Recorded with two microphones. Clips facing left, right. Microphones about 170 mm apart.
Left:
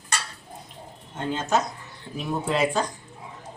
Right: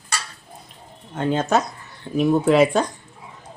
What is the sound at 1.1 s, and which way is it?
Speech, 60° right (ahead or behind).